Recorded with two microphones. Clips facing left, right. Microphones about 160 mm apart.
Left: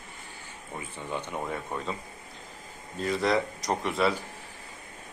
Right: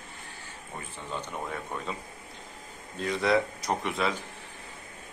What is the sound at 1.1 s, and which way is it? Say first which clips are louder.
Speech: left 1 dB; 15° left (ahead or behind).